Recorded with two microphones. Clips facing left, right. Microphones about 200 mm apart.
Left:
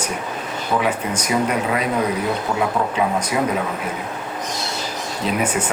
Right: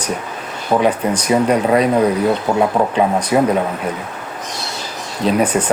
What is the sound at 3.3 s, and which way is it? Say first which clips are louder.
Speech: right 9 dB; 40° right (ahead or behind).